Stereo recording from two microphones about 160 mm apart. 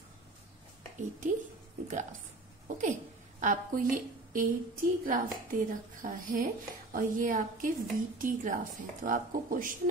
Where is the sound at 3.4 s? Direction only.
55° right (ahead or behind).